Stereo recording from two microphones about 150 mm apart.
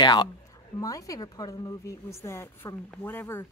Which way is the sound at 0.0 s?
30° left (ahead or behind).